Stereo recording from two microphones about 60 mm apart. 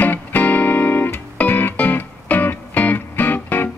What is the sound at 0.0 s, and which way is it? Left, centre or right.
Music, left.